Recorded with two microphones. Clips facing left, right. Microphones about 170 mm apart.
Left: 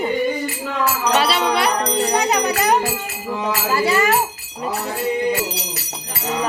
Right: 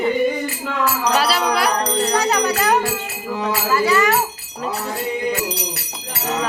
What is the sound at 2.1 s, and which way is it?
Speech, 15° left (ahead or behind).